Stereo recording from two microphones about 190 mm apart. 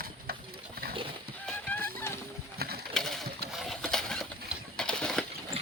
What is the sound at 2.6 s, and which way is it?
Pigeon, 55° right (ahead or behind).